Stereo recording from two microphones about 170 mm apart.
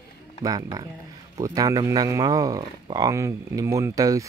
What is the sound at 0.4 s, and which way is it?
Speech, 20° right (ahead or behind).